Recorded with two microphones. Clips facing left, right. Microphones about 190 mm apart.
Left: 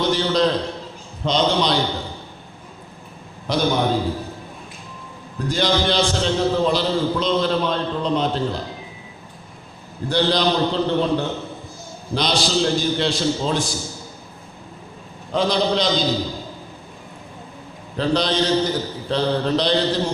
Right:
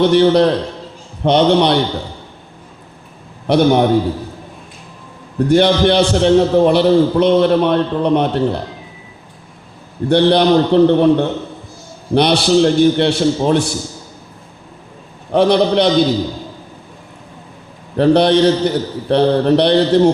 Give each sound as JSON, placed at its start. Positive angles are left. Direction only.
{"t": 0.0, "sound": "a man's voice", "side_deg": -65}
{"t": 3.4, "sound": "a man's voice", "side_deg": -65}
{"t": 5.5, "sound": "a man's voice", "side_deg": -65}
{"t": 10.1, "sound": "a man's voice", "side_deg": -60}
{"t": 15.3, "sound": "a man's voice", "side_deg": -65}
{"t": 17.9, "sound": "a man's voice", "side_deg": -60}